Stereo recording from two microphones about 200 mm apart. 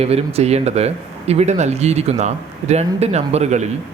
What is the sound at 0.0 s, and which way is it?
Speech, 30° right (ahead or behind).